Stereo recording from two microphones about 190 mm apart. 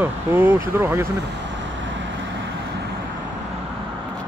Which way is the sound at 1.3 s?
70° right (ahead or behind).